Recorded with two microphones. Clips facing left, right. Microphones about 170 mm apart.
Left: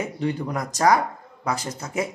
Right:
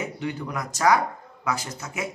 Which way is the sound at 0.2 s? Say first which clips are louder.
Left 4 dB; 35° left (ahead or behind).